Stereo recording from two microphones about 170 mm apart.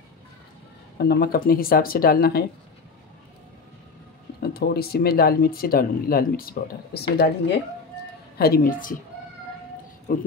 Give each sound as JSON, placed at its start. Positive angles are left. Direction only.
{"t": 0.9, "sound": "speech", "side_deg": 70}
{"t": 4.4, "sound": "speech", "side_deg": 65}
{"t": 8.4, "sound": "speech", "side_deg": 60}